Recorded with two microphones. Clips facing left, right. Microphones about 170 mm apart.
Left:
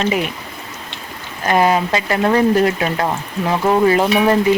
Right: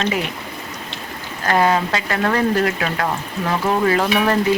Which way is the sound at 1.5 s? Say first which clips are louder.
Left 2 dB; 20° left (ahead or behind).